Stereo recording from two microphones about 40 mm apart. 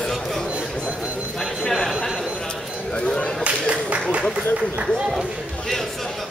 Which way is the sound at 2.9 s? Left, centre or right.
Left.